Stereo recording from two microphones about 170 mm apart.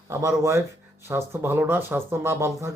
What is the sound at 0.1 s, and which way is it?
Speech, 15° right (ahead or behind).